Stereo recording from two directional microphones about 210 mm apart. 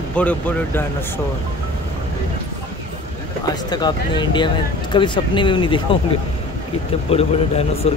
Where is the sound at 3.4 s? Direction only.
20° left (ahead or behind).